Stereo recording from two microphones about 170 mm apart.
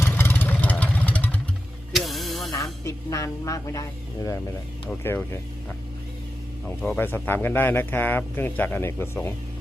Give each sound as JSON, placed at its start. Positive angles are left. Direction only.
{"t": 0.0, "sound": "vehicle", "side_deg": 15}
{"t": 1.9, "sound": "hiss", "side_deg": 0}
{"t": 2.8, "sound": "speech", "side_deg": 20}
{"t": 6.7, "sound": "speech", "side_deg": 10}